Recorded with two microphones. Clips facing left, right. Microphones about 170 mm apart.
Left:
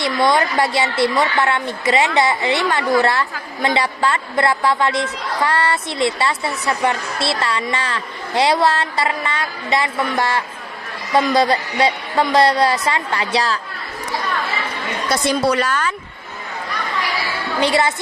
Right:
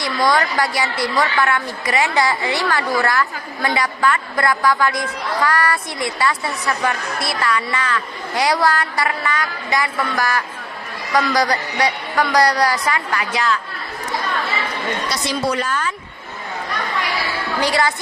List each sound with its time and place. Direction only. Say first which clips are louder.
0.0 s a woman's voice: left 2 dB; 25° left (ahead or behind)
15.1 s a woman's voice: left 7 dB; 55° left (ahead or behind); by 16.0 s 75° left (ahead or behind)
17.6 s a woman's voice: left 2 dB; 25° left (ahead or behind)